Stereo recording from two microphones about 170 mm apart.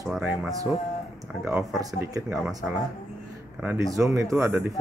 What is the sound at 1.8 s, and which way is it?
Speech, 20° right (ahead or behind).